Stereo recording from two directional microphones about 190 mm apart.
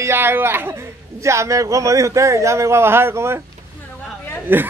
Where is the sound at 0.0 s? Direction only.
10° right (ahead or behind).